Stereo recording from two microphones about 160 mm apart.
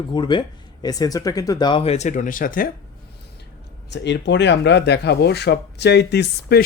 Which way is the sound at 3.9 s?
90° left.